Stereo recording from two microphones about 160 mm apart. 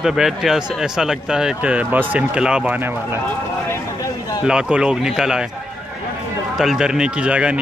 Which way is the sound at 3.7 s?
20° left (ahead or behind).